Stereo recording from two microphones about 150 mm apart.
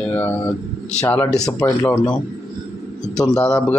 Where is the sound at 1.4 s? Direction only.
25° left (ahead or behind).